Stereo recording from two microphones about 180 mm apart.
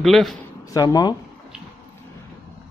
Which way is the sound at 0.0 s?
Centre (ahead or behind).